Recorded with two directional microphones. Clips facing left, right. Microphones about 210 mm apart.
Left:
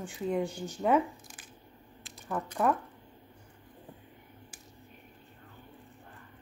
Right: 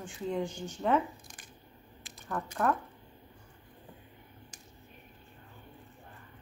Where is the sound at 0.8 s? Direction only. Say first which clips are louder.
Left 2 dB; 5° left (ahead or behind).